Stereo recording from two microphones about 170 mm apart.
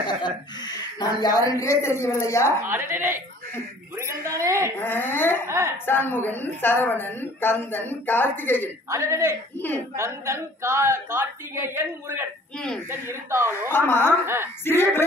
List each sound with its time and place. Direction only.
0.0 s speech: 25° left (ahead or behind)
2.6 s a woman's voice: 15° right (ahead or behind)
4.7 s speech: 10° left (ahead or behind)
5.5 s a woman's voice: 15° right (ahead or behind)
5.9 s speech: 10° left (ahead or behind)
8.9 s a woman's voice: 15° right (ahead or behind)
12.5 s speech: 5° left (ahead or behind)
12.9 s a woman's voice: 15° right (ahead or behind)
13.7 s speech: 15° left (ahead or behind)
14.2 s a woman's voice: 15° right (ahead or behind)
14.6 s speech: 15° left (ahead or behind)